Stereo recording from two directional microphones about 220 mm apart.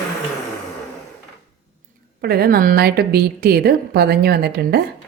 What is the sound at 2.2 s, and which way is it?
A woman's voice, 45° right (ahead or behind).